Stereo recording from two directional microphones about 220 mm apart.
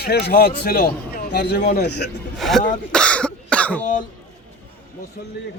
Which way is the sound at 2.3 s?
Centre (ahead or behind).